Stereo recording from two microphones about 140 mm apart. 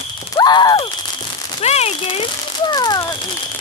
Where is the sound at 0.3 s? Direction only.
30° left (ahead or behind).